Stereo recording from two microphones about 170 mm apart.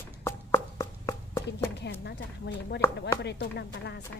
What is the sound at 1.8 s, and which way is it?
A woman's voice, 90° left.